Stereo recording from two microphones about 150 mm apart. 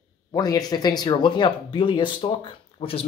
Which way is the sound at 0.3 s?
25° left (ahead or behind).